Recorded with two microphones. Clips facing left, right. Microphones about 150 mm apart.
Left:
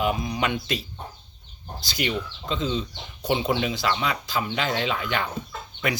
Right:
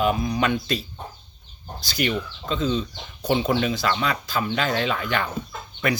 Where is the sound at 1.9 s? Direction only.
20° left (ahead or behind).